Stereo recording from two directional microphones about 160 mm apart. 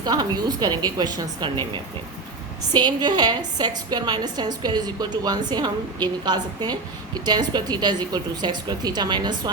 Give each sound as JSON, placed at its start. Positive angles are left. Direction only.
{"t": 0.0, "sound": "a woman's voice", "side_deg": -25}
{"t": 2.7, "sound": "a woman's voice", "side_deg": -25}